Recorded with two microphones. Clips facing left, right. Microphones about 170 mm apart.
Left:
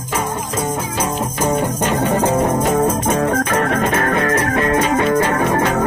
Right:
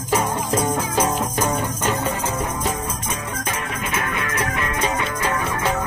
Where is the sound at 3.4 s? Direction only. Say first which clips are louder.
Left 10 dB; 90° left.